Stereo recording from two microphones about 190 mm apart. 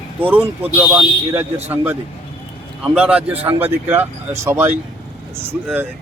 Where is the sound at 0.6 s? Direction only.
10° right (ahead or behind).